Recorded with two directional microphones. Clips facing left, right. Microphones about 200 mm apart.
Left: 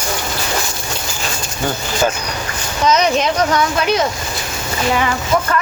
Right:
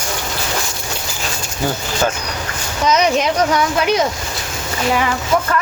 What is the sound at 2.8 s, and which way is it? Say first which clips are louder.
Speech: even; 10° right (ahead or behind).